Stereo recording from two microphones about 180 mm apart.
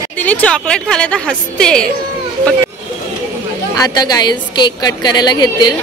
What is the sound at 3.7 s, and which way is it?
A woman's voice, 20° left (ahead or behind).